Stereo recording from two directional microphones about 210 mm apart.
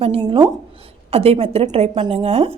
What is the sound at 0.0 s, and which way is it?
A woman's voice, 25° right (ahead or behind).